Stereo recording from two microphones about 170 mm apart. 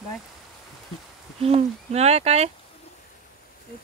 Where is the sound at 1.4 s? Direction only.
35° right (ahead or behind).